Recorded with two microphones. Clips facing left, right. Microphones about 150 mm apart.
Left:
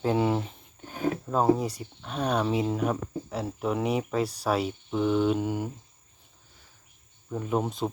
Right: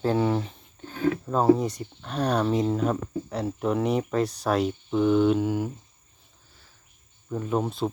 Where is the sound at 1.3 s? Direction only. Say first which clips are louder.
Right 3 dB; 10° left (ahead or behind).